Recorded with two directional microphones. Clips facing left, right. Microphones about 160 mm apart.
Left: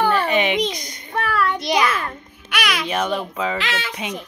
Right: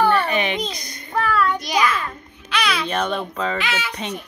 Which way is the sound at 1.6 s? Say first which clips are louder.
Left 1 dB; 20° left (ahead or behind).